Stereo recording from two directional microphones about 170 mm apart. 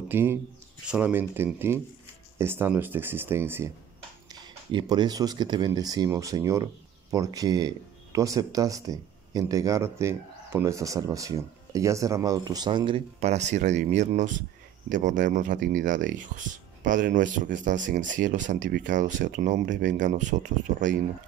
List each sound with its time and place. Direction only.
0.1 s speech: 15° right (ahead or behind)
4.3 s speech: 25° right (ahead or behind); by 20.9 s 45° right (ahead or behind)